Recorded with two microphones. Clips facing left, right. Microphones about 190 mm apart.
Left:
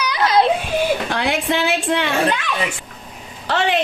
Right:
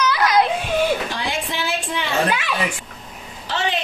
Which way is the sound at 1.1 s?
65° left (ahead or behind).